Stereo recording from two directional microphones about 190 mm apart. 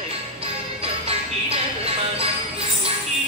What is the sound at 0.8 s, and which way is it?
Music, 30° right (ahead or behind).